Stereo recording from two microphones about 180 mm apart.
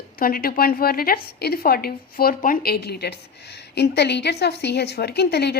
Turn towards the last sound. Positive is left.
turn(degrees=65)  # may be behind; listen again after turning